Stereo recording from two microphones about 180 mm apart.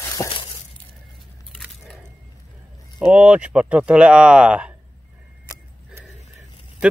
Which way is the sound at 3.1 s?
5° right (ahead or behind).